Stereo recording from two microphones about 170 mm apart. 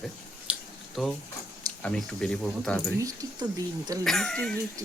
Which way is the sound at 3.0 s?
20° right (ahead or behind).